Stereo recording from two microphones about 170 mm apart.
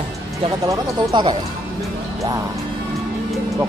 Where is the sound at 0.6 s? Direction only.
25° right (ahead or behind).